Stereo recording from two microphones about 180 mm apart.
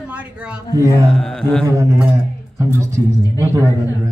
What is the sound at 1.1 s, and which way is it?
Speech, centre (ahead or behind).